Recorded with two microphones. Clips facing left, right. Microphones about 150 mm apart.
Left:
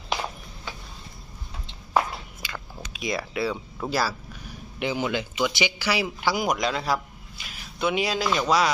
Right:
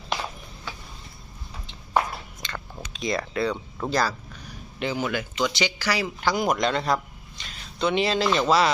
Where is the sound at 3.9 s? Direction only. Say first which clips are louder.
Right 1 dB; 5° left (ahead or behind).